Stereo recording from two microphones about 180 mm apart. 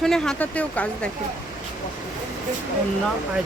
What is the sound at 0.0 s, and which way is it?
Speech, 5° left (ahead or behind).